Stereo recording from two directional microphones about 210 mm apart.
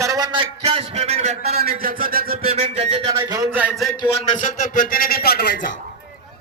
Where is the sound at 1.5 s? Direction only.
45° right (ahead or behind).